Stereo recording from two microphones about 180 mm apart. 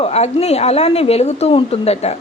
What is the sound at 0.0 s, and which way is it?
Speech, 35° left (ahead or behind).